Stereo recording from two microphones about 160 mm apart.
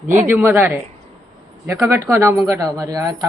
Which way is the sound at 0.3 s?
15° right (ahead or behind).